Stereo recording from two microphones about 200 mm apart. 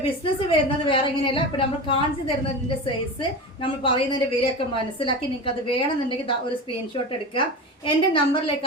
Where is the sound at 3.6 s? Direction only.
25° left (ahead or behind).